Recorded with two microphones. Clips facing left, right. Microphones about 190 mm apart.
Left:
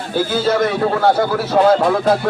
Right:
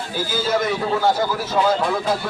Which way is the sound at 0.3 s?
60° left (ahead or behind).